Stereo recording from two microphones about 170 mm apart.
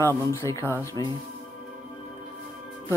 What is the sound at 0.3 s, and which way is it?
Speech, 15° left (ahead or behind).